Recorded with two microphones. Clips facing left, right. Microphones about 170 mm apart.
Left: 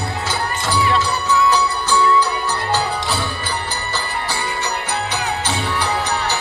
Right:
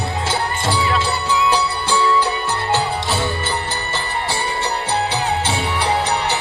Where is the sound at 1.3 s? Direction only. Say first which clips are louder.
Left 2 dB; 30° right (ahead or behind).